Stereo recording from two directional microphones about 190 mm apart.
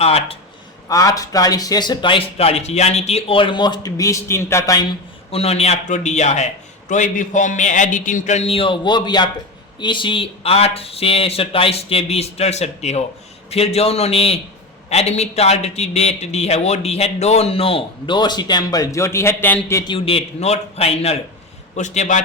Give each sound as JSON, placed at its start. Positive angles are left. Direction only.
{"t": 0.0, "sound": "a man's voice", "side_deg": 30}
{"t": 0.9, "sound": "speech", "side_deg": 20}
{"t": 5.3, "sound": "a man's voice", "side_deg": 30}
{"t": 19.9, "sound": "a man's voice", "side_deg": 30}